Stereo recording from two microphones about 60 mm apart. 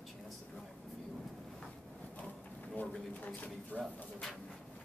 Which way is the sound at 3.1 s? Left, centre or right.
Left.